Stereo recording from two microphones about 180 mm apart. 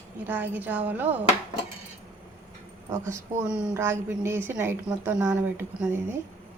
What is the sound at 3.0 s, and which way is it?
Speech, 15° right (ahead or behind).